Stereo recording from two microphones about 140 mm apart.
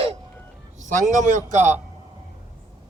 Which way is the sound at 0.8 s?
65° right (ahead or behind).